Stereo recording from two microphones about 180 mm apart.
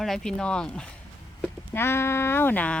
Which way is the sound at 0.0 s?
Centre (ahead or behind).